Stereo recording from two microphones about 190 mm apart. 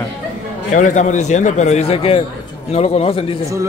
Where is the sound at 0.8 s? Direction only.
40° left (ahead or behind).